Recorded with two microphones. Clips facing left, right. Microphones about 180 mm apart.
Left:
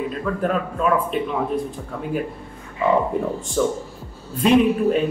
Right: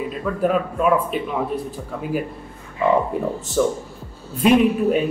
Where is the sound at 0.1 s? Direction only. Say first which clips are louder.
Right 2 dB; 5° right (ahead or behind).